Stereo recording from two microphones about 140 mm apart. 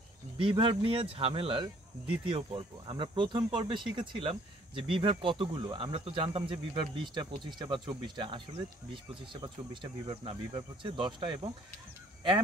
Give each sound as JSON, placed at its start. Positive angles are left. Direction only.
{"t": 0.4, "sound": "speech", "side_deg": -40}